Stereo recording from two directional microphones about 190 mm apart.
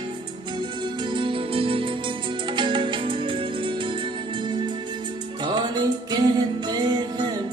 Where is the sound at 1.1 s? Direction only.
25° right (ahead or behind).